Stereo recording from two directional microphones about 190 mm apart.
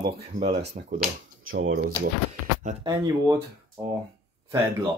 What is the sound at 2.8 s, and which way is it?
Speech, 15° right (ahead or behind).